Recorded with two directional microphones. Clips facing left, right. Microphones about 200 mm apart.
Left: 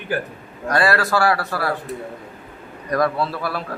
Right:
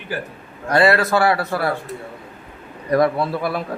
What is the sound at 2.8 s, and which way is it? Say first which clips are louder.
Speech: right 3 dB; 25° right (ahead or behind).